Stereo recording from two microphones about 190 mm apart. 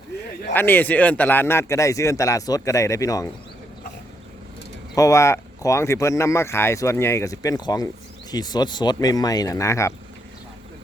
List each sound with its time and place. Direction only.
0.5 s speech: 10° left (ahead or behind)
4.9 s speech: 15° left (ahead or behind)